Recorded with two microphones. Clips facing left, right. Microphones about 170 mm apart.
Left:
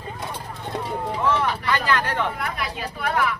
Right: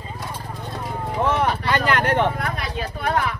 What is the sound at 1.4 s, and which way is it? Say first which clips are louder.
Vehicle: right 3 dB; 30° right (ahead or behind).